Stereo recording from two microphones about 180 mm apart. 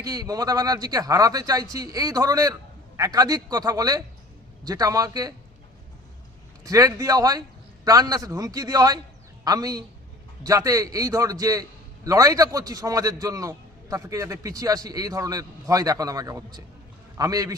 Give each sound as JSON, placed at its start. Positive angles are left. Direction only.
{"t": 0.0, "sound": "a man's voice", "side_deg": -20}
{"t": 6.7, "sound": "a man's voice", "side_deg": -20}